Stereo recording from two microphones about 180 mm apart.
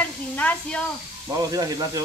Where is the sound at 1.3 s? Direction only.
20° right (ahead or behind).